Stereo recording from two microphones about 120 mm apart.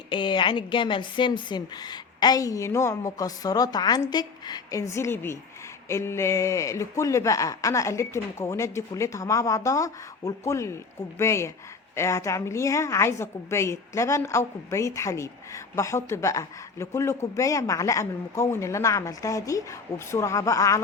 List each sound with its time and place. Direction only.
0.1 s a woman's voice: 40° left (ahead or behind); by 20.8 s 25° left (ahead or behind)